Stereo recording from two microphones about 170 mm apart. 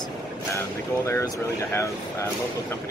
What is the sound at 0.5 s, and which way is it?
Speech, 15° left (ahead or behind).